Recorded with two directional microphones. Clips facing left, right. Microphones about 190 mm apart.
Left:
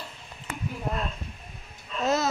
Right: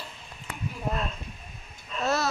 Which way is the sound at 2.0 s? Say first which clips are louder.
Left 2 dB; 20° left (ahead or behind).